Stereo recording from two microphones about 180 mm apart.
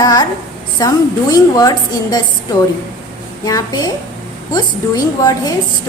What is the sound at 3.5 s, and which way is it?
A woman's voice, 20° left (ahead or behind).